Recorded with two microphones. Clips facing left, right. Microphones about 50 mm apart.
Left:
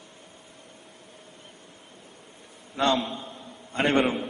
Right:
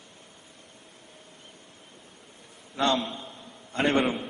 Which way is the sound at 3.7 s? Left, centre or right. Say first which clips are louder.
Left 1 dB; left.